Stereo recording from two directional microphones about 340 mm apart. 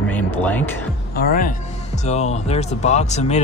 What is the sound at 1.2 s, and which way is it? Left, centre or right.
Speech, left.